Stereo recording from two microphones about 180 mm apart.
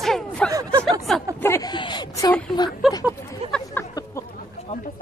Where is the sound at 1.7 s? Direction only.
25° left (ahead or behind).